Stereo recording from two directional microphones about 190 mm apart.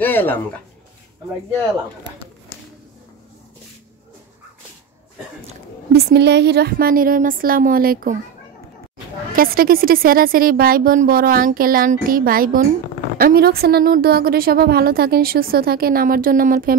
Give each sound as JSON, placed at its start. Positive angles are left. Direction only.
{"t": 0.0, "sound": "speech", "side_deg": 10}
{"t": 5.9, "sound": "a woman's voice", "side_deg": -60}
{"t": 9.3, "sound": "a woman's voice", "side_deg": -50}